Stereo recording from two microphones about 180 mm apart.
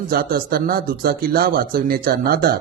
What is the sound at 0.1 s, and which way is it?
Speech, 55° right (ahead or behind).